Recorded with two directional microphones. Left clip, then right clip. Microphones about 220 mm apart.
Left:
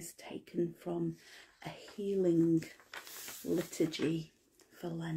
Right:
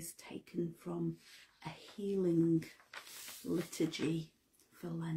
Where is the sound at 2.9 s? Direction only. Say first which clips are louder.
Left 3 dB; 35° left (ahead or behind).